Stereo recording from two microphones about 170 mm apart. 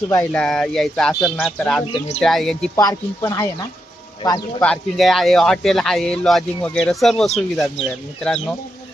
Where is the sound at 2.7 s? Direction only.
20° left (ahead or behind).